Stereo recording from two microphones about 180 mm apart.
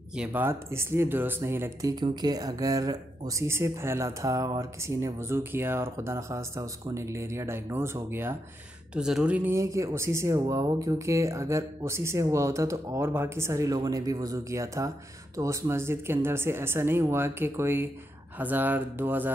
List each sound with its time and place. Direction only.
0.1 s speech: 5° right (ahead or behind)